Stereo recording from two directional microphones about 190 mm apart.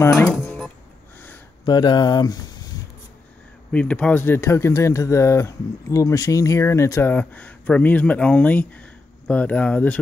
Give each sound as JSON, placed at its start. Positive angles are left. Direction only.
{"t": 0.2, "sound": "music", "side_deg": 10}
{"t": 1.7, "sound": "speech", "side_deg": 20}
{"t": 3.7, "sound": "speech", "side_deg": 5}